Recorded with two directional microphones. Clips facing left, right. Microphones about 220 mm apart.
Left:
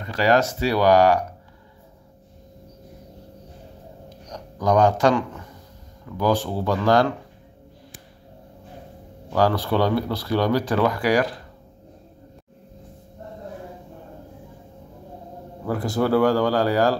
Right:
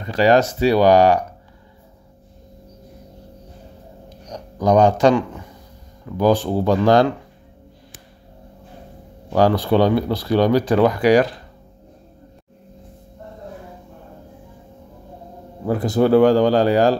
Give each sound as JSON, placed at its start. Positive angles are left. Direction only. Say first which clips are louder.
{"t": 0.0, "sound": "speech", "louder": "right 4 dB", "side_deg": -20}
{"t": 4.3, "sound": "a man's voice", "louder": "right 4 dB", "side_deg": -20}
{"t": 9.3, "sound": "speech", "louder": "right 5 dB", "side_deg": -20}
{"t": 15.6, "sound": "speech", "louder": "right 5 dB", "side_deg": -20}